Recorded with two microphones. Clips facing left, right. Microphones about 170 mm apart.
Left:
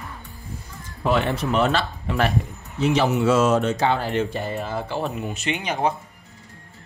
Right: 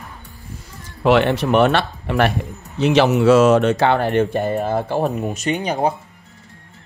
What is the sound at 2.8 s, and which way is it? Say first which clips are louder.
Speech: right 5 dB; 80° right.